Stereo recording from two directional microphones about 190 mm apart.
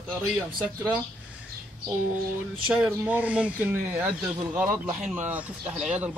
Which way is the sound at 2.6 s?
5° right (ahead or behind).